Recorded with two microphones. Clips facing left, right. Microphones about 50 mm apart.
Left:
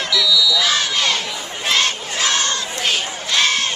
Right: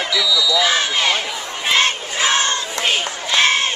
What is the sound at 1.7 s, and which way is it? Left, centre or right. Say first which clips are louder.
Crowd: right 2 dB; right.